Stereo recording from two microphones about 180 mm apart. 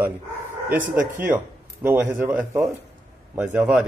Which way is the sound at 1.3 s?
10° right (ahead or behind).